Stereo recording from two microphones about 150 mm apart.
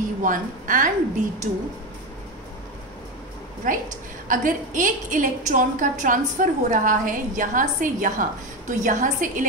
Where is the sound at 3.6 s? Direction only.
65° right (ahead or behind).